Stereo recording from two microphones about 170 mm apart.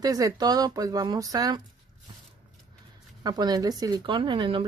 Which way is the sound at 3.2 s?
25° right (ahead or behind).